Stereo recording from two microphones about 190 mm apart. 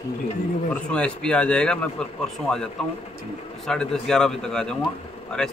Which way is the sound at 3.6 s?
5° left (ahead or behind).